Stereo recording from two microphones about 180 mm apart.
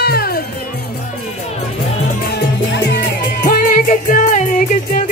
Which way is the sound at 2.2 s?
65° left (ahead or behind).